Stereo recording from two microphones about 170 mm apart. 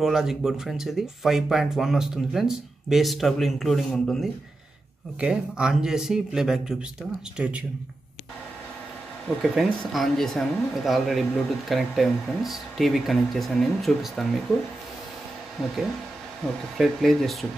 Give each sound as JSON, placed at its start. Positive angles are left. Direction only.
{"t": 0.0, "sound": "speech", "side_deg": 0}
{"t": 9.4, "sound": "speech", "side_deg": 0}
{"t": 15.6, "sound": "speech", "side_deg": 0}